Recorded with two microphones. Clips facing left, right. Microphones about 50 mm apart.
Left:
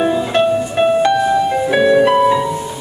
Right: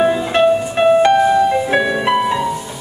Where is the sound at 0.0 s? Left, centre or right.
Centre.